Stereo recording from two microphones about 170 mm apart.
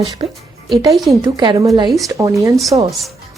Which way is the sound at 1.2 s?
25° right (ahead or behind).